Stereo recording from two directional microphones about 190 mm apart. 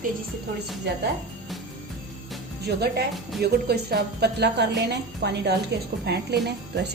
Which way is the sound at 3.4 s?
55° right (ahead or behind).